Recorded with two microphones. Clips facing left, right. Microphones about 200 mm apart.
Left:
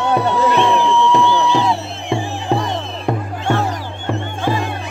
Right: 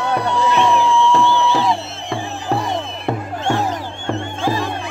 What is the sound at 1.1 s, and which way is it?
Music, 15° left (ahead or behind).